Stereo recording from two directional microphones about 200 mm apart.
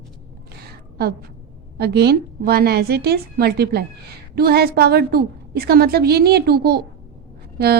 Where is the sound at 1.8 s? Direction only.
55° right (ahead or behind).